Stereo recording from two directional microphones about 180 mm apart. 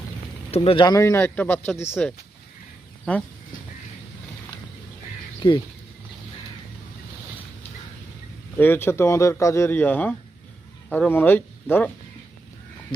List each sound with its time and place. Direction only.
0.5 s speech: 30° left (ahead or behind); by 2.1 s 5° left (ahead or behind)
5.4 s speech: 25° left (ahead or behind)
8.5 s speech: 10° left (ahead or behind)